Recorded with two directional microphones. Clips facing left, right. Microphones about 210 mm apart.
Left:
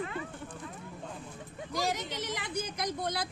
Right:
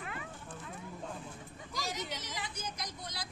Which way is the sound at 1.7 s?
60° left (ahead or behind).